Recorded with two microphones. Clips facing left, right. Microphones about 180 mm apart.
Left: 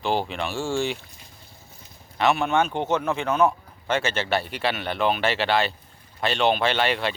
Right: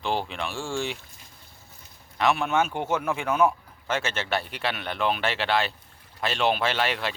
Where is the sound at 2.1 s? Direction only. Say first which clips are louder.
Left 2 dB; centre (ahead or behind).